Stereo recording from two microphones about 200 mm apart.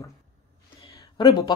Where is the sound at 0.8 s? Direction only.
20° left (ahead or behind).